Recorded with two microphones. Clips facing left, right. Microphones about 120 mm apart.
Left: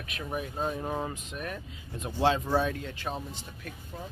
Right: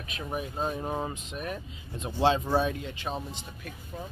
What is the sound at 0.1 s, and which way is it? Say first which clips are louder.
Speech: right 1 dB; 20° right (ahead or behind).